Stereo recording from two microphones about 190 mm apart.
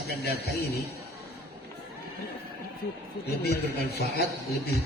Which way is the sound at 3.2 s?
60° left (ahead or behind).